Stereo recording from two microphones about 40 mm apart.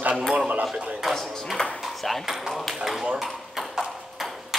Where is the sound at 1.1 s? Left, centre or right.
Centre.